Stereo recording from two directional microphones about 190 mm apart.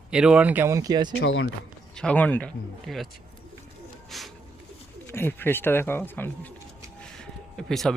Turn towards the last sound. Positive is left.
turn(degrees=0)  # may be behind; listen again after turning